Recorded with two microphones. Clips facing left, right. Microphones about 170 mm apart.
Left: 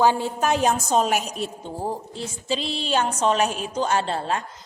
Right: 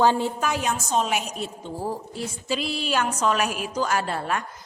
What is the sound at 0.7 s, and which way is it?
Speech, 40° left (ahead or behind).